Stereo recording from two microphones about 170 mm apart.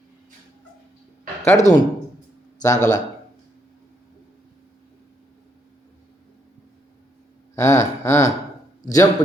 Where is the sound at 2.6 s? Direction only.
45° left (ahead or behind).